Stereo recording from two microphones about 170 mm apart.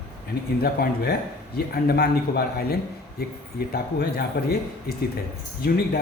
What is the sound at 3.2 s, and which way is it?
Speech, 70° left (ahead or behind).